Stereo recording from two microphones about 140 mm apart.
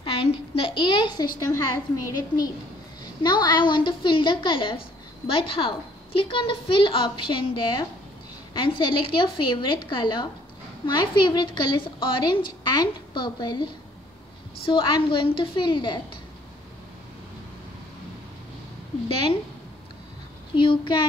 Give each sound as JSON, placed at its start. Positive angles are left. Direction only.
{"t": 0.0, "sound": "a woman's voice", "side_deg": 40}
{"t": 20.5, "sound": "a woman's voice", "side_deg": 35}